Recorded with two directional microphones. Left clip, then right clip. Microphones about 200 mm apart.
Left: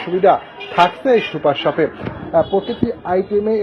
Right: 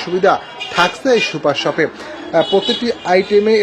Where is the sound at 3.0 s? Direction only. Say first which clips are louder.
Right 5 dB; 35° right (ahead or behind).